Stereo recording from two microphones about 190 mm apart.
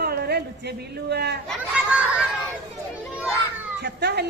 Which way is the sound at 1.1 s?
60° right (ahead or behind).